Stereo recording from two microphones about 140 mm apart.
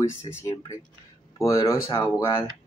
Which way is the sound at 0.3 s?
20° left (ahead or behind).